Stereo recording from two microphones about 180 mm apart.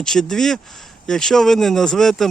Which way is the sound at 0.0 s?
5° left (ahead or behind).